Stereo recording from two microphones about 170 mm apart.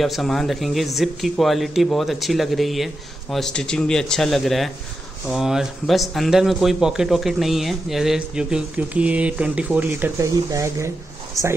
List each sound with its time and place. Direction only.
0.0 s speech: centre (ahead or behind); by 11.5 s 20° right (ahead or behind)